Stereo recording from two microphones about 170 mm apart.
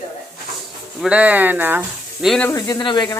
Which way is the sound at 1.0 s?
5° right (ahead or behind).